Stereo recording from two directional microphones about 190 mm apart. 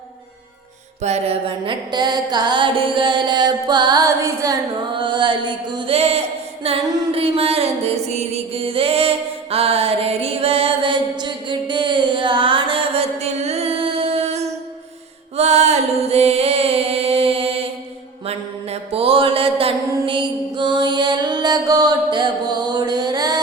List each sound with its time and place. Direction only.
1.0 s music: 35° right (ahead or behind)
18.3 s mantra: 30° right (ahead or behind)